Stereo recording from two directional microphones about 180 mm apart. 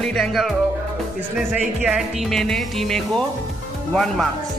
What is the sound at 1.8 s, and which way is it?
Speech, 5° right (ahead or behind).